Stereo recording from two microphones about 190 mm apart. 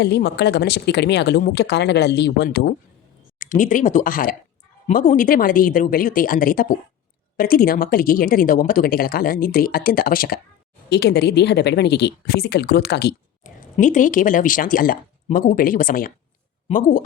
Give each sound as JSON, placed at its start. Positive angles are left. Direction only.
{"t": 0.0, "sound": "speech", "side_deg": 60}
{"t": 3.3, "sound": "speech", "side_deg": 45}
{"t": 13.4, "sound": "speech", "side_deg": 45}